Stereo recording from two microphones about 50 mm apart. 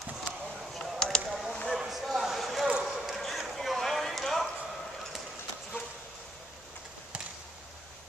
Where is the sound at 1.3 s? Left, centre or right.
Centre.